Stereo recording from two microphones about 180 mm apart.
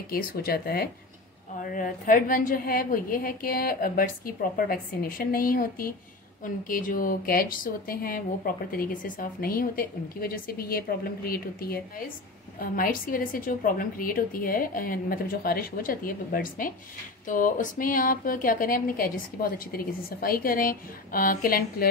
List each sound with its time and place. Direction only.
0.1 s a woman's voice: 55° left (ahead or behind)